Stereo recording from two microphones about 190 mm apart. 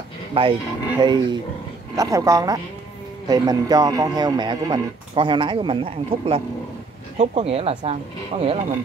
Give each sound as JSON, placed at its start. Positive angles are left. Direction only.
{"t": 0.3, "sound": "speech", "side_deg": -25}